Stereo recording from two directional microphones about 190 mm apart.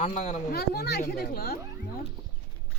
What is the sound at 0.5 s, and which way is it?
Speech, 55° left (ahead or behind).